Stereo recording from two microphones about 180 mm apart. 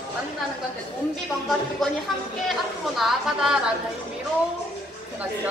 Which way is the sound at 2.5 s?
Centre (ahead or behind).